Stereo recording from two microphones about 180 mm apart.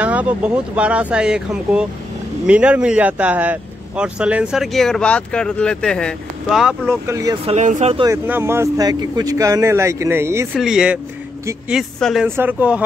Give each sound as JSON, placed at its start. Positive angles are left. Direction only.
{"t": 0.0, "sound": "speech", "side_deg": -10}
{"t": 6.9, "sound": "speech", "side_deg": -15}
{"t": 7.4, "sound": "speech", "side_deg": -40}
{"t": 8.1, "sound": "speech", "side_deg": -15}
{"t": 10.5, "sound": "speech", "side_deg": -5}